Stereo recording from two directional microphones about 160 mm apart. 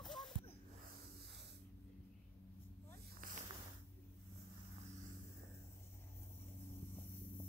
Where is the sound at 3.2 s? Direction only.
60° right (ahead or behind).